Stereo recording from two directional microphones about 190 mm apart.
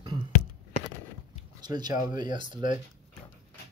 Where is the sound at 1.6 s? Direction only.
20° right (ahead or behind).